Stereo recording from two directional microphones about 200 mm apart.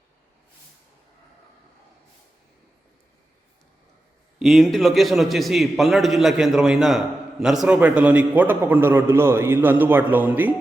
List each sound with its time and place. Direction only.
4.4 s a man's voice: centre (ahead or behind)